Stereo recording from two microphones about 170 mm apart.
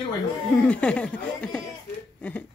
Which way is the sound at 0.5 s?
5° left (ahead or behind).